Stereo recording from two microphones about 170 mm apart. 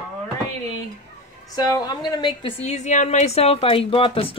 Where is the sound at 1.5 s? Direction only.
25° left (ahead or behind).